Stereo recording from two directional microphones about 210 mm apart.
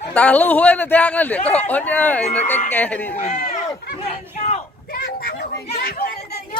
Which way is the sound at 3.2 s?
30° left (ahead or behind).